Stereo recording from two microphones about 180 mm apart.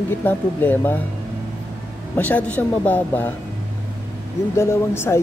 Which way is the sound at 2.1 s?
10° left (ahead or behind).